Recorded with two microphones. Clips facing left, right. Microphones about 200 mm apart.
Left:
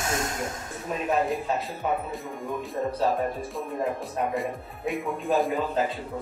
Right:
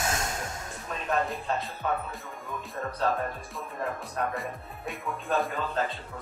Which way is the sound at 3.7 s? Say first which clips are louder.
Left 3 dB; 15° left (ahead or behind).